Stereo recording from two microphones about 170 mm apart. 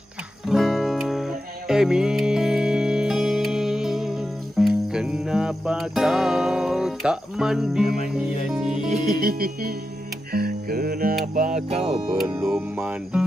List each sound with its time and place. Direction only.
0.5 s music: centre (ahead or behind)
9.1 s music: 60° right (ahead or behind)
11.3 s music: 45° right (ahead or behind)
11.9 s speech: centre (ahead or behind)